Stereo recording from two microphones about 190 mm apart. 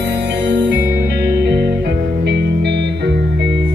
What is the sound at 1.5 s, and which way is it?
Music, 60° right (ahead or behind).